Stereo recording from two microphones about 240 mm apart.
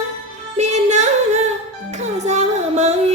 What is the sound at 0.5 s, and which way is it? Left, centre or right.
Music, right.